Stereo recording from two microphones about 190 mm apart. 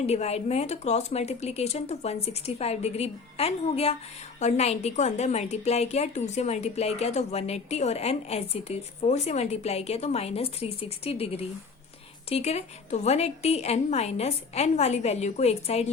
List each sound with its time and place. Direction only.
0.0 s a woman's voice: 35° left (ahead or behind)